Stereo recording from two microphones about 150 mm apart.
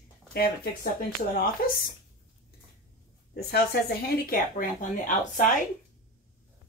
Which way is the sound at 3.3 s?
90° left.